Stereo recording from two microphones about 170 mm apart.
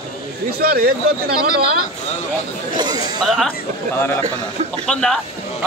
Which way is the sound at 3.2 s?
Centre (ahead or behind).